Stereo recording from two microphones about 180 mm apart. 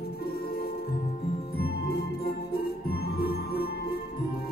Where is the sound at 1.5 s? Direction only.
60° left (ahead or behind).